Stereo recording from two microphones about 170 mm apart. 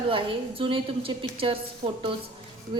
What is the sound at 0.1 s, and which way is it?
A woman's voice, 30° right (ahead or behind).